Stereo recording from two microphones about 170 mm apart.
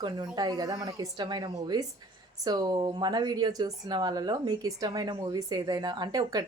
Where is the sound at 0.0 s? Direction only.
25° right (ahead or behind).